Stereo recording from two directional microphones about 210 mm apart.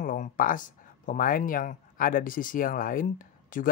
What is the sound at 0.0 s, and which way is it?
Speech, 40° left (ahead or behind).